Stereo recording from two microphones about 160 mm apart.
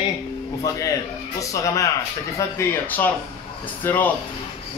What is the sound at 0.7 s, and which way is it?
A man's voice, 20° left (ahead or behind).